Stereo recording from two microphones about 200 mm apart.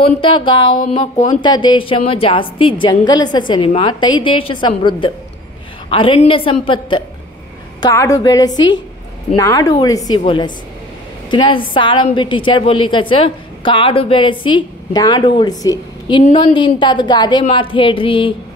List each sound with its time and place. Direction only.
0.0 s a woman's voice: 25° left (ahead or behind)